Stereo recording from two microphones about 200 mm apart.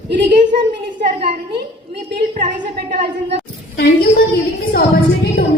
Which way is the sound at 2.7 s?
50° right (ahead or behind).